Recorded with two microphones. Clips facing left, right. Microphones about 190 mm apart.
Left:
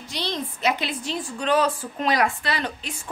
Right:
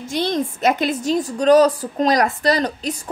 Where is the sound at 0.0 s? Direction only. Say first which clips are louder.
Right 9 dB; 50° right (ahead or behind).